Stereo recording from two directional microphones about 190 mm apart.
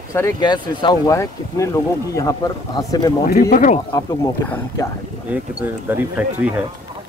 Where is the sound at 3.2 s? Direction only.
45° left (ahead or behind).